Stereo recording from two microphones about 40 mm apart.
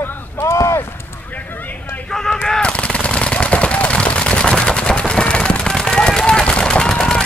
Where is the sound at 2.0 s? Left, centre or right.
Centre.